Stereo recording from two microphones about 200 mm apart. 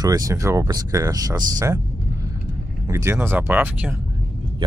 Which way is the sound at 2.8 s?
15° right (ahead or behind).